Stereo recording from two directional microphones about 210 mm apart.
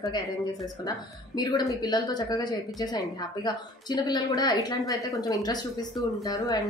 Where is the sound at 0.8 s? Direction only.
20° left (ahead or behind).